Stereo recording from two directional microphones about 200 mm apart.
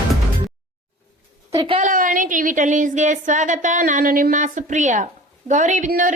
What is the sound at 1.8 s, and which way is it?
A woman's voice, 40° right (ahead or behind).